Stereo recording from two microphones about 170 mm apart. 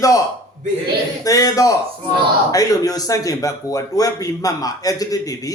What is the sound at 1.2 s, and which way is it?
A man's voice, 20° left (ahead or behind).